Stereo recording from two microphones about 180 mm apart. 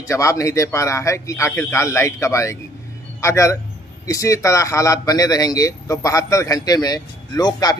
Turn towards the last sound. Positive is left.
turn(degrees=20)  # may be behind; listen again after turning